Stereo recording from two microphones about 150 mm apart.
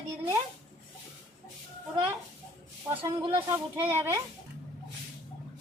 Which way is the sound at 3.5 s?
15° right (ahead or behind).